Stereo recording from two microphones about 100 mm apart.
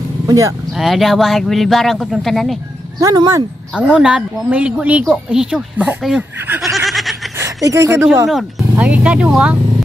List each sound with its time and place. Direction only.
0.3 s speech: 35° right (ahead or behind)
0.7 s speech: centre (ahead or behind)
3.0 s speech: 35° right (ahead or behind)
3.7 s speech: 10° right (ahead or behind)
6.6 s a sound: centre (ahead or behind)
7.3 s speech: 30° right (ahead or behind)
8.3 s speech: centre (ahead or behind)
8.8 s speech: 15° right (ahead or behind)